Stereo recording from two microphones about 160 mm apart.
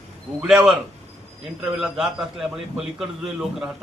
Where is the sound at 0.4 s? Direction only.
5° right (ahead or behind).